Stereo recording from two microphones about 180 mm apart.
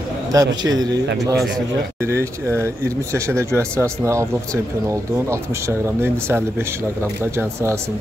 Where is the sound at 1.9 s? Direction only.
15° right (ahead or behind).